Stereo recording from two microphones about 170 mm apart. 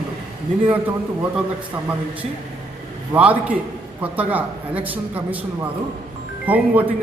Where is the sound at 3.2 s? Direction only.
10° right (ahead or behind).